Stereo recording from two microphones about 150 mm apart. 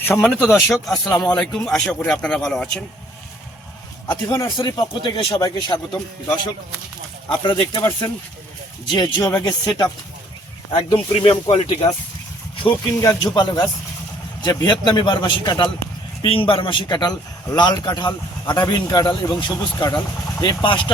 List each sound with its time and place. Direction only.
0.0 s speech: 15° left (ahead or behind)
0.5 s a man's voice: centre (ahead or behind)
4.1 s a man's voice: 15° left (ahead or behind)
4.4 s speech: 30° left (ahead or behind)
10.8 s speech: 40° left (ahead or behind)
13.0 s speech: 25° left (ahead or behind)